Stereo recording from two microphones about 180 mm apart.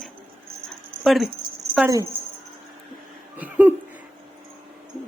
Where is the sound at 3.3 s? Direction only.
10° right (ahead or behind).